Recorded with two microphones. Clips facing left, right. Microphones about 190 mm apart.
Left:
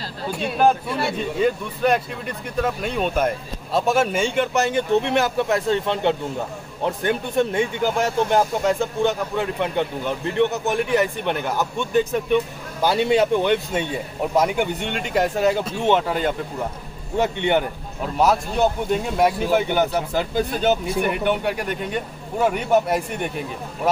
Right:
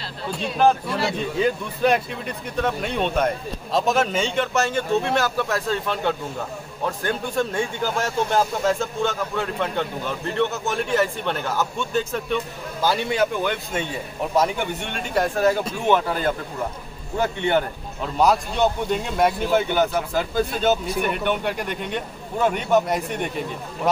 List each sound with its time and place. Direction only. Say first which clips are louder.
1.4 s speech: left 1 dB; centre (ahead or behind); by 17.6 s 20° left (ahead or behind)
18.1 s speech: even; 5° left (ahead or behind)